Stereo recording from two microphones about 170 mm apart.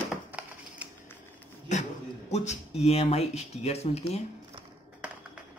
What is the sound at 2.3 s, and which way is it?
Speech, 40° left (ahead or behind).